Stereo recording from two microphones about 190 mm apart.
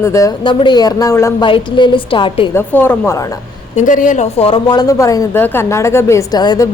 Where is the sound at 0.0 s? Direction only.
15° left (ahead or behind).